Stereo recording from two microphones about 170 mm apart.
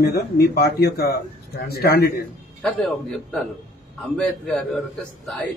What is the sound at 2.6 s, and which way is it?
A man's voice, centre (ahead or behind).